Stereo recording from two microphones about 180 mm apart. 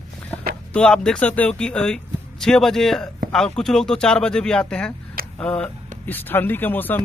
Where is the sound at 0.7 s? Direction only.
5° left (ahead or behind).